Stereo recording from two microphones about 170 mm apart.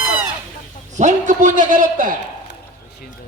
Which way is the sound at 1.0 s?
45° right (ahead or behind).